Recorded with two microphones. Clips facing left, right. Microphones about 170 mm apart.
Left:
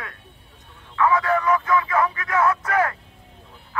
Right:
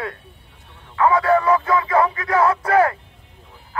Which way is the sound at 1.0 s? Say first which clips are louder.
Right 4 dB; 30° right (ahead or behind).